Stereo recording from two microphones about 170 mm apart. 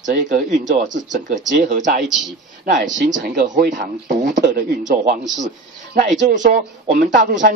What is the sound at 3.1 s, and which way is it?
Speech, 80° right.